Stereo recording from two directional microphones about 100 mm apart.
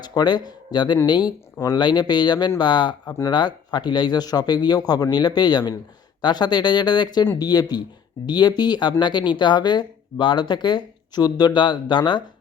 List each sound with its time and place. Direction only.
0.0 s speech: 45° left (ahead or behind)